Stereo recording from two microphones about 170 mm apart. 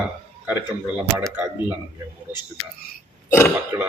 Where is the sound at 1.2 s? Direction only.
10° right (ahead or behind).